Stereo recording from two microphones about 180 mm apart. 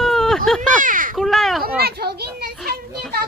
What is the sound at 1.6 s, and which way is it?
Children playing, 60° right (ahead or behind).